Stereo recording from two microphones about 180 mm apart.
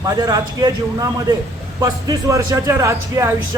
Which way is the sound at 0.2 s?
20° right (ahead or behind).